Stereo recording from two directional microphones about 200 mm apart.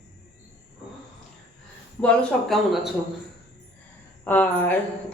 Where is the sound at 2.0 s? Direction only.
5° left (ahead or behind).